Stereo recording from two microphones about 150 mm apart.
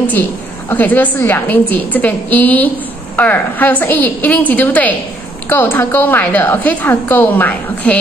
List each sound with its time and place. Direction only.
0.7 s a woman's voice: 10° left (ahead or behind)